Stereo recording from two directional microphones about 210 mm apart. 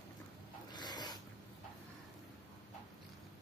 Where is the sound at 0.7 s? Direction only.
20° left (ahead or behind).